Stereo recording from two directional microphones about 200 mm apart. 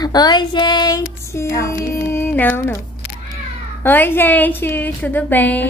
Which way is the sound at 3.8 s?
10° left (ahead or behind).